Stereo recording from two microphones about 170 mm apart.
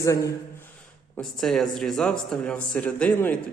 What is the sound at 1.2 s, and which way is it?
Speech, centre (ahead or behind).